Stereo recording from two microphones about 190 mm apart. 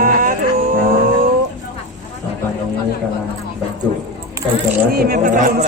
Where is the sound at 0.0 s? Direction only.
50° right (ahead or behind).